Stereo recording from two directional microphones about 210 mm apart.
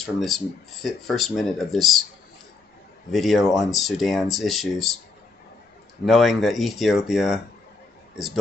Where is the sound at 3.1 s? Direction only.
Centre (ahead or behind).